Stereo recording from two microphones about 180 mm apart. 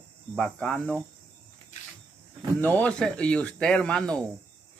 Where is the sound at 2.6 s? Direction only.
10° left (ahead or behind).